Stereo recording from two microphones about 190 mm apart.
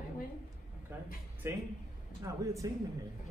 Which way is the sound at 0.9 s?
10° right (ahead or behind).